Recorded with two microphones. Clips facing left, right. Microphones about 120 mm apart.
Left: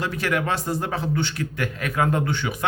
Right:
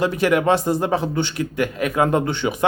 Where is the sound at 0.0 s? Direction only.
20° right (ahead or behind).